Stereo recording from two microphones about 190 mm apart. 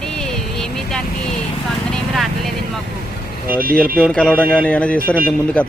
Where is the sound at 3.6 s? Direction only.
50° right (ahead or behind).